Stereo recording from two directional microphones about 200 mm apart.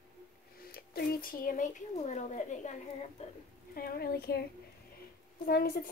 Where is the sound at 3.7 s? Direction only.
45° left (ahead or behind).